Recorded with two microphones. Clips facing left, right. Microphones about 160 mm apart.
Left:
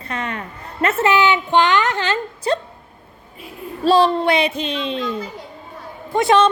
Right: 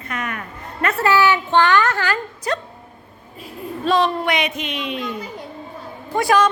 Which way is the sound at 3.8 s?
30° left (ahead or behind).